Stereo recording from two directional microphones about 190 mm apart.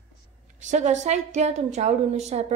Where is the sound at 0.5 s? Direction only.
40° right (ahead or behind).